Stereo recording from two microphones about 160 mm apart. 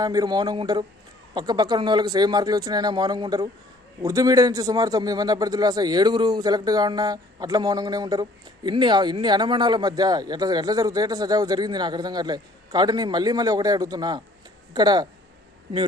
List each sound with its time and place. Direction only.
0.0 s a man's voice: 25° right (ahead or behind)